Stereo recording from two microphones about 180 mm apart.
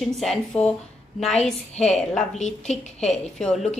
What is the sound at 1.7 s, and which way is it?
Speech, 35° left (ahead or behind).